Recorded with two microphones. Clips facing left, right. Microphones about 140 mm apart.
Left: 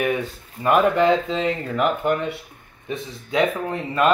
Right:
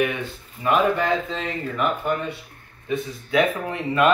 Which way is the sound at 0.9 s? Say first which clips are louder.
Left 5 dB; 90° left.